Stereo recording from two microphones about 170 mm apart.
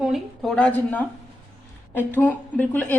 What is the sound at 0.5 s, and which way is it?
A woman's voice, 10° left (ahead or behind).